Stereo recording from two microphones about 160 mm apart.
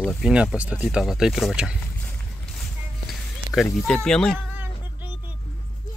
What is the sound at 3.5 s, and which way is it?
Speech, 5° left (ahead or behind).